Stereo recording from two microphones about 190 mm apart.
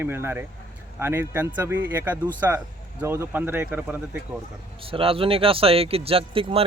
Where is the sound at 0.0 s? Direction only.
10° right (ahead or behind).